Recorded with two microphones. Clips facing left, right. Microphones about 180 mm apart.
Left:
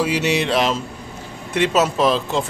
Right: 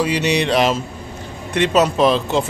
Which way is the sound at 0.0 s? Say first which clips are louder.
Right 1 dB; 5° left (ahead or behind).